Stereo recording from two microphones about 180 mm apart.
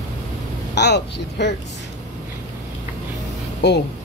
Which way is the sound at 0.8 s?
70° left (ahead or behind).